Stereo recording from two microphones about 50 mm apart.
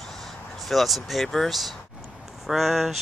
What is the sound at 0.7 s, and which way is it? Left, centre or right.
Speech, centre.